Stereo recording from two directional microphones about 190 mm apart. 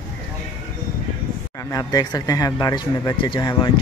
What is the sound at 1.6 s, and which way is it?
Speech, 20° left (ahead or behind).